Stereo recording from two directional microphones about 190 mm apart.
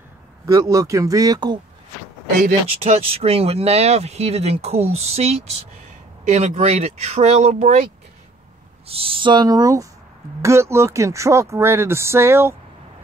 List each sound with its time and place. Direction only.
0.5 s speech: 20° right (ahead or behind)
2.4 s speech: 30° right (ahead or behind)
8.8 s speech: 30° right (ahead or behind); by 12.5 s 15° right (ahead or behind)